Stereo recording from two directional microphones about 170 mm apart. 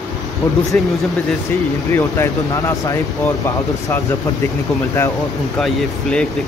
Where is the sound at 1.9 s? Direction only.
15° left (ahead or behind).